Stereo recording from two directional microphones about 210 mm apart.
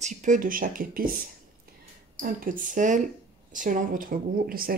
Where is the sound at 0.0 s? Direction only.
35° right (ahead or behind).